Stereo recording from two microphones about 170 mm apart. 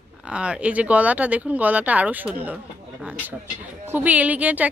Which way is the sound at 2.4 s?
10° right (ahead or behind).